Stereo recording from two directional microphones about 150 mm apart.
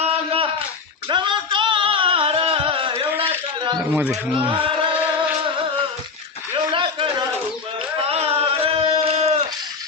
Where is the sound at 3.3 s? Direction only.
35° right (ahead or behind).